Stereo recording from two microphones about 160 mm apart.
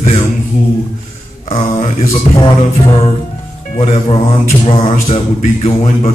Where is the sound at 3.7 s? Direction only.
40° left (ahead or behind).